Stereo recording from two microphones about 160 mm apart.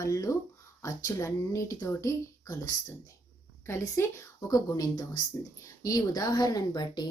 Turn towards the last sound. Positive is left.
turn(degrees=25)  # may be behind; listen again after turning